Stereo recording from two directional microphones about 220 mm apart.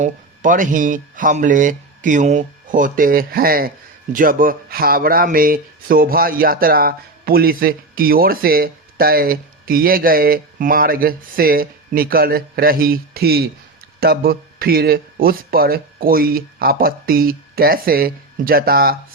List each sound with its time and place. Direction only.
0.0 s speech: 35° right (ahead or behind)